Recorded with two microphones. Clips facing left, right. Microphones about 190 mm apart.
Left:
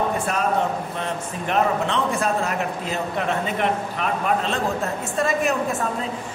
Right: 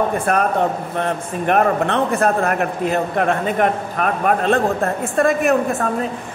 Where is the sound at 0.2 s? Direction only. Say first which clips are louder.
Right 5 dB; 55° right (ahead or behind).